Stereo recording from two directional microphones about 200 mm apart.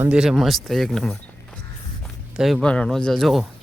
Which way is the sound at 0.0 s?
5° right (ahead or behind).